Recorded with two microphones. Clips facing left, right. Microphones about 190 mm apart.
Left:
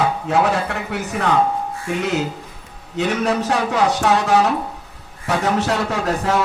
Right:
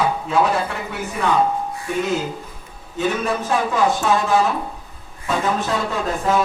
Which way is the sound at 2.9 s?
75° left (ahead or behind).